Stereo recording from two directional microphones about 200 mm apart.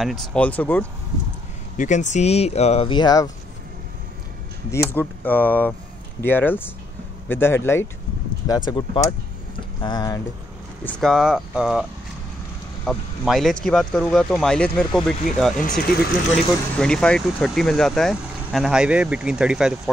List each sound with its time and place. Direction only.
0.0 s speech: centre (ahead or behind)
1.8 s speech: 40° left (ahead or behind); by 3.3 s 20° left (ahead or behind)
4.6 s speech: 10° left (ahead or behind)
10.8 s speech: centre (ahead or behind)
12.8 s speech: centre (ahead or behind)
16.7 s speech: 5° left (ahead or behind)